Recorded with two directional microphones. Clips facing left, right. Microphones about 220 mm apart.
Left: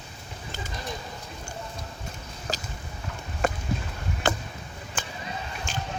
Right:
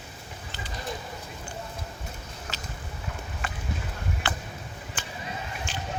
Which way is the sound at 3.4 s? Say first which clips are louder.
Left 12 dB; 45° left (ahead or behind).